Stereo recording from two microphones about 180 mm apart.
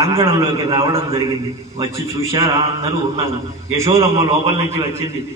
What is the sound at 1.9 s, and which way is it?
Speech, 15° right (ahead or behind).